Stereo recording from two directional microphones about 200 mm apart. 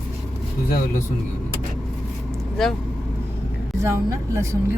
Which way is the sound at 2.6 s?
Centre (ahead or behind).